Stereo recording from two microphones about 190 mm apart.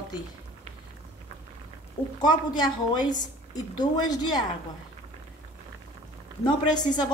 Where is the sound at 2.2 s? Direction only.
20° left (ahead or behind).